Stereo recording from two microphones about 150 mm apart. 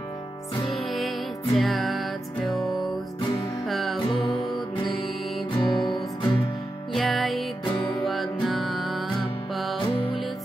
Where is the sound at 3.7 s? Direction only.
Centre (ahead or behind).